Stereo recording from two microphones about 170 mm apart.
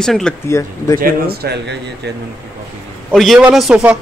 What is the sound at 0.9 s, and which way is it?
Speech, 60° right (ahead or behind).